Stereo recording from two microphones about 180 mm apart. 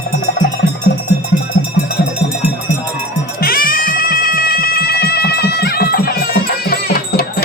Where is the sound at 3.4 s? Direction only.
55° left (ahead or behind).